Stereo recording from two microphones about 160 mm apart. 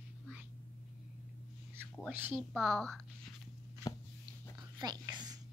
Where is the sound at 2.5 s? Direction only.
Centre (ahead or behind).